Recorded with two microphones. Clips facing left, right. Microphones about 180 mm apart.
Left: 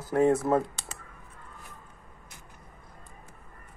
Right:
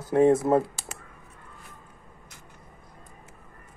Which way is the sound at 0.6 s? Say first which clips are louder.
Right 1 dB; centre (ahead or behind).